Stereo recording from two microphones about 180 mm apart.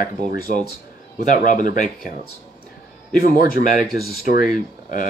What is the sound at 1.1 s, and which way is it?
Speech, 45° left (ahead or behind).